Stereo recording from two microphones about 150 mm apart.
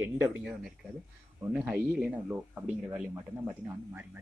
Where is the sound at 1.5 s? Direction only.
5° right (ahead or behind).